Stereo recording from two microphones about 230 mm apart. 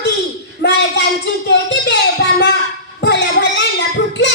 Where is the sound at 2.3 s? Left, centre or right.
Left.